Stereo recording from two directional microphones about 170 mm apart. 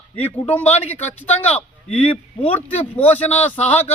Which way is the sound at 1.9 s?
10° left (ahead or behind).